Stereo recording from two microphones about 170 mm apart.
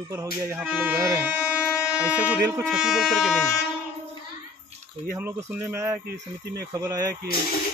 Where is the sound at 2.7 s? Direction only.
5° right (ahead or behind).